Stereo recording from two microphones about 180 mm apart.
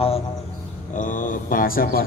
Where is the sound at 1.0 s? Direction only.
45° left (ahead or behind).